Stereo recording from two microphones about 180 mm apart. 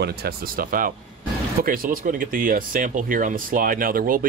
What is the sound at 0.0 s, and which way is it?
Speech, 60° right (ahead or behind).